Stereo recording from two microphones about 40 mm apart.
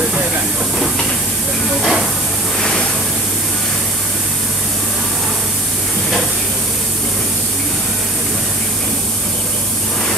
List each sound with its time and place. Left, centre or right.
1.8 s hiss: centre